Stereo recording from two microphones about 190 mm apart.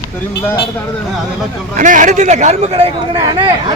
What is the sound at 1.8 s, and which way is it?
A man's voice, 45° right (ahead or behind).